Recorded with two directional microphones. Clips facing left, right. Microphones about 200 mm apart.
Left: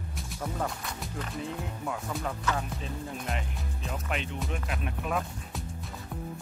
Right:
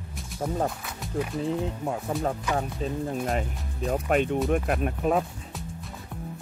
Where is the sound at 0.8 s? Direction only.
5° right (ahead or behind).